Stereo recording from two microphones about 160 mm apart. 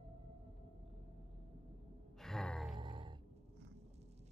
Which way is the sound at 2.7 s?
30° right (ahead or behind).